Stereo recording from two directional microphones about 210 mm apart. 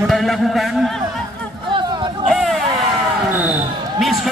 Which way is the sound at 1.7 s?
20° right (ahead or behind).